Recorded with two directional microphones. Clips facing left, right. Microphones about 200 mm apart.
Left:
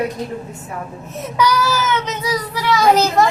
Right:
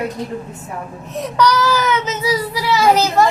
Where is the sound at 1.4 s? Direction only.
10° left (ahead or behind).